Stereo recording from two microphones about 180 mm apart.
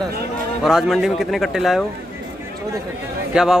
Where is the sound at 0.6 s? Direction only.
Centre (ahead or behind).